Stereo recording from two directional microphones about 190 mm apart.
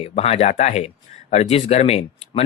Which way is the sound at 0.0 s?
30° left (ahead or behind).